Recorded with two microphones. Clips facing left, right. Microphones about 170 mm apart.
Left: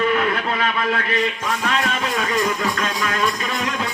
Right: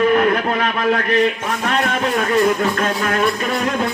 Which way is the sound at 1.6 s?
40° right (ahead or behind).